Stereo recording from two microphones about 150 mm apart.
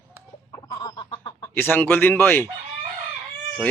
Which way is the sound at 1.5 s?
15° left (ahead or behind).